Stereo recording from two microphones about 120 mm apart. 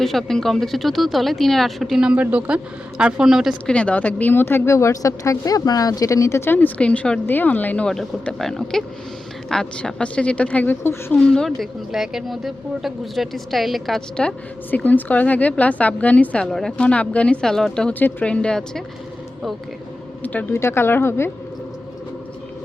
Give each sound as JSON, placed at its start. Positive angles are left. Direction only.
{"t": 0.0, "sound": "speech", "side_deg": 5}
{"t": 3.7, "sound": "a woman's voice", "side_deg": 10}
{"t": 20.2, "sound": "speech", "side_deg": 15}